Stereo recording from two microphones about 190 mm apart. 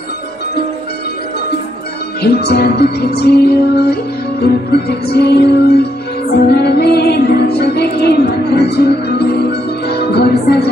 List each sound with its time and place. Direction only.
2.2 s music: 55° left (ahead or behind)